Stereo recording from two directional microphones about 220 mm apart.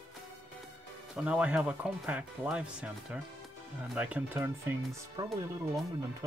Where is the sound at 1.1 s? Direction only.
5° right (ahead or behind).